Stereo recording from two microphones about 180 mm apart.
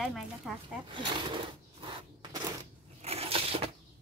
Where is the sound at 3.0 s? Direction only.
35° right (ahead or behind).